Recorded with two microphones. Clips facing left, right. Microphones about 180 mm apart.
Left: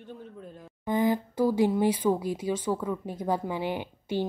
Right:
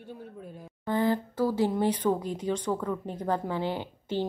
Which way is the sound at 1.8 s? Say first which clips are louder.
Left 1 dB; 10° left (ahead or behind).